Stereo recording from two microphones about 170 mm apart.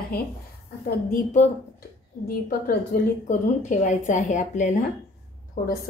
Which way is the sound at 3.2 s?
45° left (ahead or behind).